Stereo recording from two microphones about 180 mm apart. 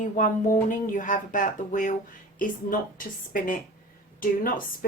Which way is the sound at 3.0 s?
50° left (ahead or behind).